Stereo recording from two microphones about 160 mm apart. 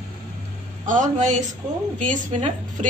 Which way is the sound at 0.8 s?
55° right (ahead or behind).